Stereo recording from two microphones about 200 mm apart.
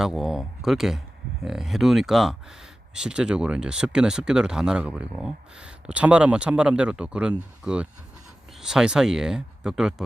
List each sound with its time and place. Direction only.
0.0 s speech: centre (ahead or behind)